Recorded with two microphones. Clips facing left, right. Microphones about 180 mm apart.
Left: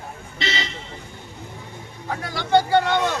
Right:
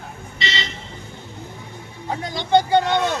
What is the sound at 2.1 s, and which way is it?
Vehicle, 20° right (ahead or behind).